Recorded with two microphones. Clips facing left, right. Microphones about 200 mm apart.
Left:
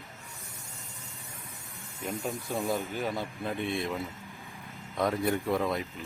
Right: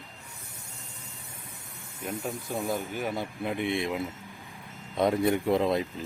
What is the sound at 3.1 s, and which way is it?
Speech, 15° right (ahead or behind).